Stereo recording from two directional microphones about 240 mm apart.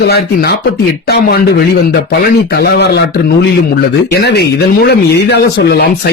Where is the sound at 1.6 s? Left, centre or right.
Left.